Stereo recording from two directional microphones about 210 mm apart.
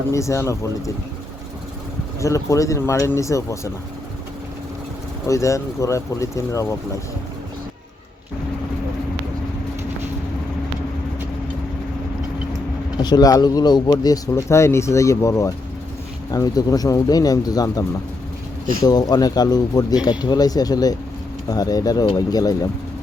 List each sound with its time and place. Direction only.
0.1 s speech: 15° left (ahead or behind)
2.2 s speech: 15° left (ahead or behind)
5.2 s speech: 15° left (ahead or behind)
13.0 s speech: 20° left (ahead or behind)